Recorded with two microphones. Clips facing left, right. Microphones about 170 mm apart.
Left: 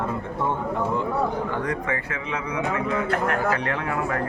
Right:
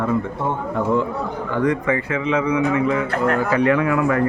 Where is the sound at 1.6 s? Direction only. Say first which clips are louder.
Right 7 dB; 90° right.